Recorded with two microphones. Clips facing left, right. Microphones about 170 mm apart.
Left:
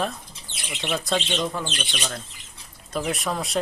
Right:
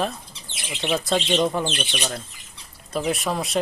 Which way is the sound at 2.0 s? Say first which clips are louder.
Right 3 dB; 5° right (ahead or behind).